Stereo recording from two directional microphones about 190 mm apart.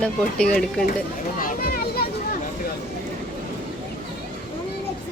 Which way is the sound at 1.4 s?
50° left (ahead or behind).